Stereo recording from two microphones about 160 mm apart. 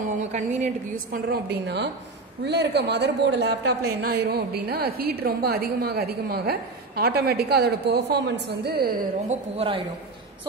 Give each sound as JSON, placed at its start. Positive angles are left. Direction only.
{"t": 0.0, "sound": "speech", "side_deg": -45}
{"t": 1.1, "sound": "a woman's voice", "side_deg": -80}